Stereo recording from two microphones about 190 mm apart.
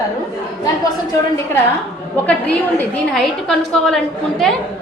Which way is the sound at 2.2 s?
5° left (ahead or behind).